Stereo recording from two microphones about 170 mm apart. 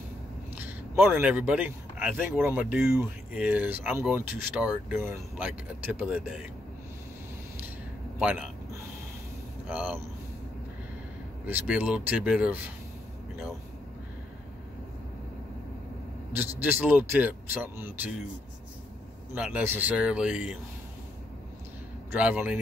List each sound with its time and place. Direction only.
0.9 s speech: 15° right (ahead or behind)
8.2 s a man's voice: 5° right (ahead or behind)
9.7 s speech: 5° right (ahead or behind)
11.4 s speech: 10° right (ahead or behind)
16.3 s speech: 10° right (ahead or behind)
19.3 s speech: 10° right (ahead or behind)
22.1 s speech: 10° right (ahead or behind)